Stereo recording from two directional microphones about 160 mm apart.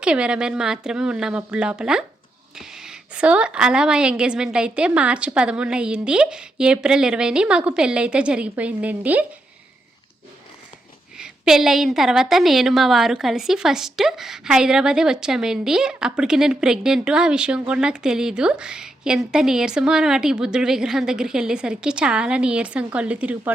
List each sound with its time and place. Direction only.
0.0 s a woman's voice: 5° right (ahead or behind)
11.2 s a woman's voice: 5° right (ahead or behind)